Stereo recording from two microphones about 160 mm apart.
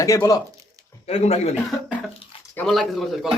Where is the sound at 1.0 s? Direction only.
40° left (ahead or behind).